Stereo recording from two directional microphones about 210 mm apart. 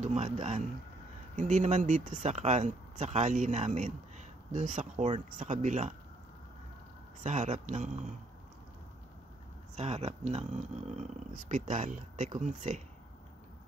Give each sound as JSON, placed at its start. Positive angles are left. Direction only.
{"t": 0.0, "sound": "speech", "side_deg": -30}
{"t": 7.2, "sound": "speech", "side_deg": -35}
{"t": 9.8, "sound": "speech", "side_deg": -30}